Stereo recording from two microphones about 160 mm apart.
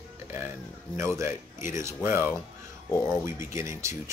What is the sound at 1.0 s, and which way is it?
Speech, 15° right (ahead or behind).